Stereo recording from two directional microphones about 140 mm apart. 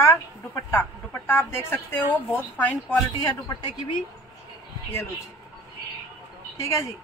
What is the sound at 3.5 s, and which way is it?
Speech, 35° left (ahead or behind).